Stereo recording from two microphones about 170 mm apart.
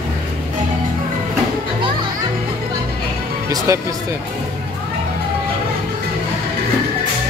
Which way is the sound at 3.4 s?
20° right (ahead or behind).